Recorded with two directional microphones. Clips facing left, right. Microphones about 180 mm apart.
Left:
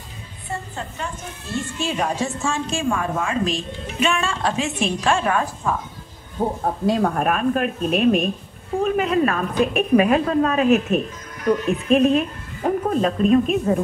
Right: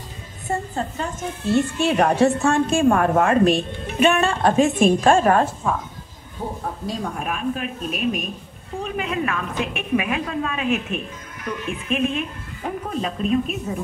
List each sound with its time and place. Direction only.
0.7 s a woman's voice: 35° right (ahead or behind)
1.5 s a woman's voice: 65° right (ahead or behind); by 5.4 s 45° right (ahead or behind)
5.7 s speech: centre (ahead or behind)
6.6 s a woman's voice: 60° left (ahead or behind)
13.7 s speech: 60° left (ahead or behind)